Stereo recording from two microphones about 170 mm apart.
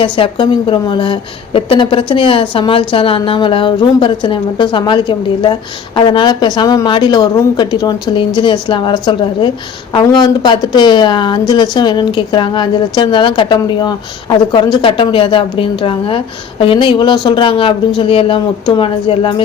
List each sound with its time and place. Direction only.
0.0 s a woman's voice: 30° left (ahead or behind)